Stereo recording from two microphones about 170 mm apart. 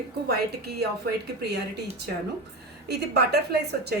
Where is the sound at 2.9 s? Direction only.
75° right (ahead or behind).